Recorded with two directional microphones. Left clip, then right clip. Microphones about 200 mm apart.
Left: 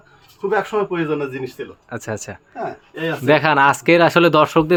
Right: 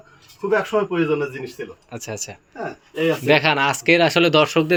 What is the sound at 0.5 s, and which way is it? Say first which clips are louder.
Speech: even; 5° left (ahead or behind).